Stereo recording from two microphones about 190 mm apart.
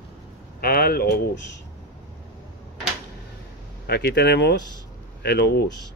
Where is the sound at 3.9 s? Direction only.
60° left (ahead or behind).